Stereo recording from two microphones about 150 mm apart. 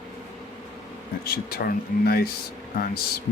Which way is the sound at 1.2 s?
85° left.